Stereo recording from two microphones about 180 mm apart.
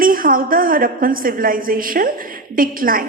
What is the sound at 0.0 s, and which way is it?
A woman's voice, 50° right (ahead or behind).